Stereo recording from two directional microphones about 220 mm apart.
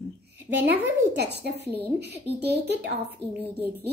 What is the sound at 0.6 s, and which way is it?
A woman's voice, 50° right (ahead or behind).